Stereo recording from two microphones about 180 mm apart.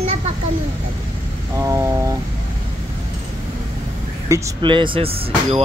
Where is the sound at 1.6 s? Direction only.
15° right (ahead or behind).